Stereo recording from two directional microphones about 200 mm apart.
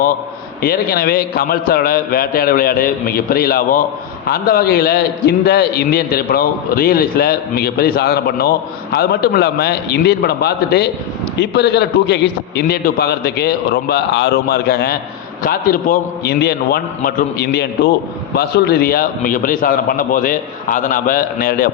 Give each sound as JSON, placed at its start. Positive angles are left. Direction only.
{"t": 0.6, "sound": "a man's voice", "side_deg": 50}